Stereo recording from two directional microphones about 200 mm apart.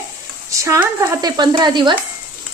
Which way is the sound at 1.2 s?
20° right (ahead or behind).